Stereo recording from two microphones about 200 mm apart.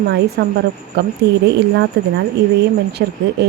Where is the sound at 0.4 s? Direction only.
60° right (ahead or behind).